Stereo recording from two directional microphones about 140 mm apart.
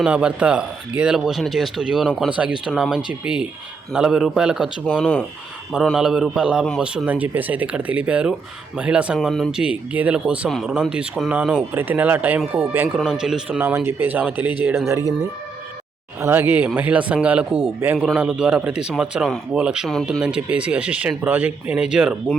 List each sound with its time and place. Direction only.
0.0 s speech: 5° right (ahead or behind)
4.9 s speech: 5° left (ahead or behind); by 14.5 s 15° right (ahead or behind)
14.8 s speech: 25° right (ahead or behind)
16.2 s speech: 15° right (ahead or behind)